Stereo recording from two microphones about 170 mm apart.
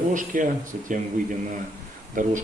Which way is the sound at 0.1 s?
50° right (ahead or behind).